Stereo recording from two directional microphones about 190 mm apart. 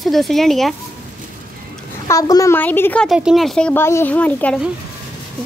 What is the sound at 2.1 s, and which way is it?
A woman's voice, 20° left (ahead or behind).